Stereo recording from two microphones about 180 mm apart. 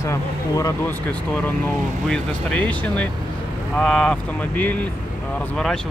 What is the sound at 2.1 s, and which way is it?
Speech, 5° left (ahead or behind).